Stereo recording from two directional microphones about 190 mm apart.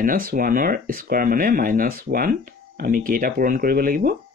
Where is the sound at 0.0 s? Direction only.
50° right (ahead or behind).